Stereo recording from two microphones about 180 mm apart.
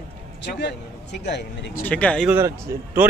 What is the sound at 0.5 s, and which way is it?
A man's voice, 70° left (ahead or behind).